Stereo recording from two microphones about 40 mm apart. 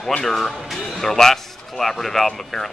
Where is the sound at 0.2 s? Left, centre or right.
Centre.